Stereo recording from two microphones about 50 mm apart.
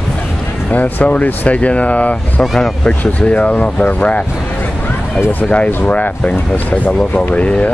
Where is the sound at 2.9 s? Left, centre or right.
Left.